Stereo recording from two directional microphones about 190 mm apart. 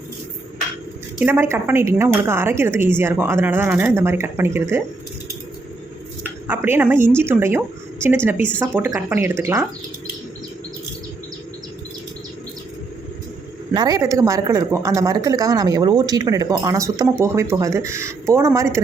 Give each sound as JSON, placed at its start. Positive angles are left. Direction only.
{"t": 1.2, "sound": "speech", "side_deg": -10}
{"t": 6.5, "sound": "speech", "side_deg": -10}
{"t": 13.7, "sound": "speech", "side_deg": -20}